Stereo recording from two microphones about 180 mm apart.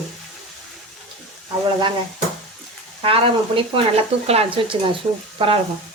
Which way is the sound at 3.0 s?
30° right (ahead or behind).